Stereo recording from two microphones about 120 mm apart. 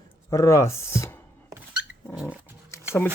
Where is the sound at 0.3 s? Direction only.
25° left (ahead or behind).